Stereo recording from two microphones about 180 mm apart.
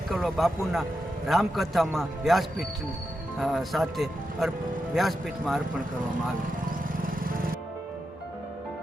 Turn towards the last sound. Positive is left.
turn(degrees=-50)  # may be behind; listen again after turning